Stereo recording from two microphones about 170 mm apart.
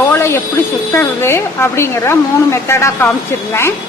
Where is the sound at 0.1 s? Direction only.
15° left (ahead or behind).